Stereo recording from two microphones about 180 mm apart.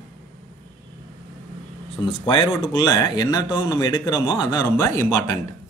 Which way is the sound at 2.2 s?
25° left (ahead or behind).